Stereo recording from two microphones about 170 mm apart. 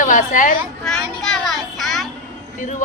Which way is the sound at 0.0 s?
50° left (ahead or behind).